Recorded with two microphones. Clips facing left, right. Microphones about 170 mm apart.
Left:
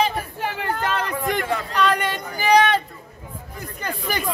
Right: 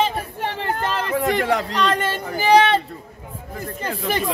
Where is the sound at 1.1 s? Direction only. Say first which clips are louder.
Right 4 dB; 80° right.